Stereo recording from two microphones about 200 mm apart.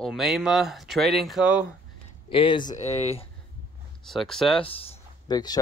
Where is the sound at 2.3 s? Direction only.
25° left (ahead or behind).